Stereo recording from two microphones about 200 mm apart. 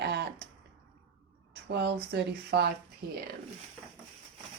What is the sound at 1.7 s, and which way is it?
Speech, 55° right (ahead or behind).